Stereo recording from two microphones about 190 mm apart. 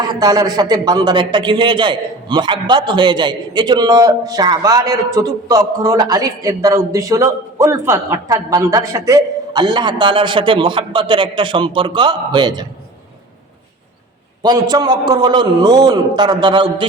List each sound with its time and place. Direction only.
0.0 s a man's voice: 20° right (ahead or behind)
14.4 s a man's voice: 20° right (ahead or behind)